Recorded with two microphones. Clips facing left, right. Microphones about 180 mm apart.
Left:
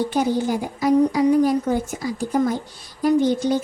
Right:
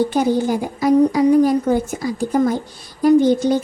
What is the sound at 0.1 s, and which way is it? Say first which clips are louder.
Speech: right 3 dB; 45° right (ahead or behind).